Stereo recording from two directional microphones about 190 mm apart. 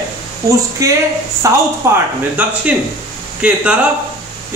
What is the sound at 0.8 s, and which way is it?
Speech, 15° right (ahead or behind).